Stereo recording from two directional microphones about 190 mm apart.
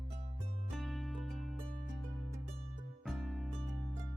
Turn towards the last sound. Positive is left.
turn(degrees=0)  # may be behind; listen again after turning